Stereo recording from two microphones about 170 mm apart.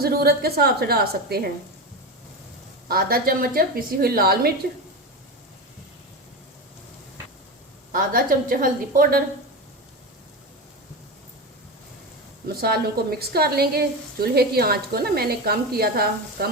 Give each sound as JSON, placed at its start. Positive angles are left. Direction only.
{"t": 0.0, "sound": "a woman's voice", "side_deg": -65}
{"t": 2.9, "sound": "a woman's voice", "side_deg": -60}
{"t": 7.9, "sound": "a woman's voice", "side_deg": -55}
{"t": 12.5, "sound": "a woman's voice", "side_deg": -65}